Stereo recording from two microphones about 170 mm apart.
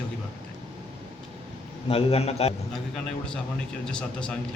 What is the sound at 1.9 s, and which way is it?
Speech, 35° left (ahead or behind).